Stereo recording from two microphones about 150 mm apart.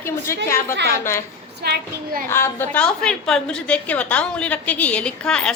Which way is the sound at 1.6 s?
90° right.